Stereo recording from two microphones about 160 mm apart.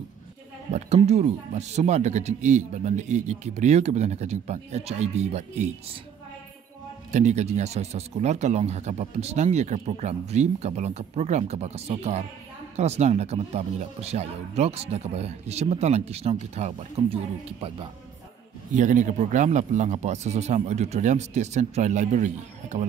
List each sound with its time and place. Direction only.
0.7 s speech: 45° right (ahead or behind)
7.1 s speech: 45° right (ahead or behind)
18.7 s speech: 50° right (ahead or behind)